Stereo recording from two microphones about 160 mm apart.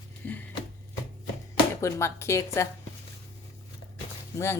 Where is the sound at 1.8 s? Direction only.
15° left (ahead or behind).